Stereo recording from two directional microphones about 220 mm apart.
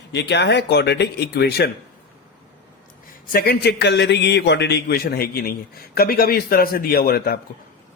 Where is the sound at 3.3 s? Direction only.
45° left (ahead or behind).